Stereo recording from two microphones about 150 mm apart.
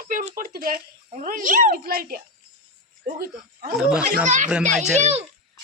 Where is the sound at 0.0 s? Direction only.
65° right (ahead or behind).